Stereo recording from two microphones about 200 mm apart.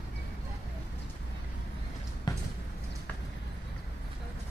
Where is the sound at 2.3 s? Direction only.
20° left (ahead or behind).